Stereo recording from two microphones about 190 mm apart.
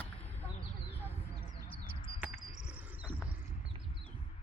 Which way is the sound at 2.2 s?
5° right (ahead or behind).